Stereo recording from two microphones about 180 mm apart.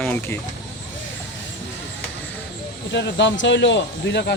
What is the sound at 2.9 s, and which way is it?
Speech, 80° left.